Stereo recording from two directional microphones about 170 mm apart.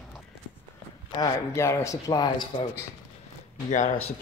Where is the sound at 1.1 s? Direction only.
20° left (ahead or behind).